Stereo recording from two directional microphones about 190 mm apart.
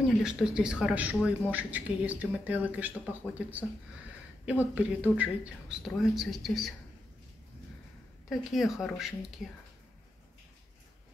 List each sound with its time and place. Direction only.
0.2 s speech: 5° right (ahead or behind)
8.3 s speech: centre (ahead or behind)